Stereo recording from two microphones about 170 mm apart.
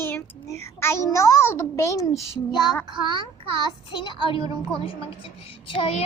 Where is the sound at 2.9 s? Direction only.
30° right (ahead or behind).